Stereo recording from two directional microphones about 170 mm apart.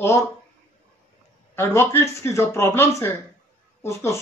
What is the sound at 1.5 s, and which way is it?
Speech, 15° left (ahead or behind).